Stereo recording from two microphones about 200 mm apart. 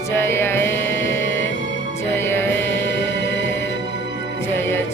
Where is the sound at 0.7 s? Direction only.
65° left (ahead or behind).